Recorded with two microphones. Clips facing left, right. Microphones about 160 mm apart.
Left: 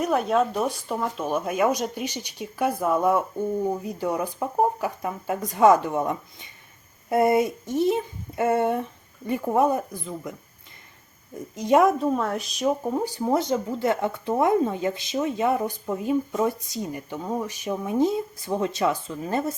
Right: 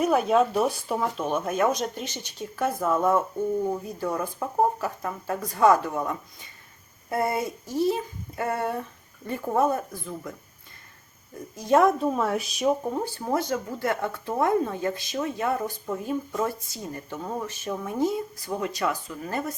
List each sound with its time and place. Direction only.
0.0 s speech: centre (ahead or behind); by 10.3 s 15° left (ahead or behind)
11.3 s speech: 20° left (ahead or behind)
11.9 s speech: centre (ahead or behind)
13.0 s speech: 15° left (ahead or behind)